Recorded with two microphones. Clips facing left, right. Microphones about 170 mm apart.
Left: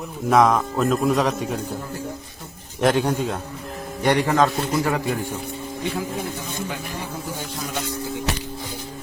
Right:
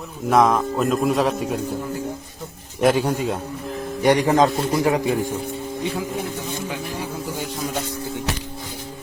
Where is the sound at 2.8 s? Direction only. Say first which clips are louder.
Right 1 dB; 5° right (ahead or behind).